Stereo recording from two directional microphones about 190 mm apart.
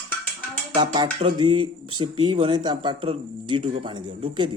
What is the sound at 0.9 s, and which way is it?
Speech, 25° right (ahead or behind).